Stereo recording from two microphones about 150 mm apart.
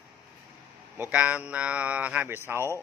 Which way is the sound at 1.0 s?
10° right (ahead or behind).